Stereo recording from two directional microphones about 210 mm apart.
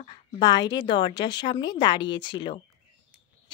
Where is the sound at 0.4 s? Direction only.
20° left (ahead or behind).